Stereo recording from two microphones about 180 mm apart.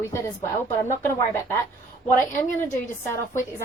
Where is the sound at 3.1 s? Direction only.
15° left (ahead or behind).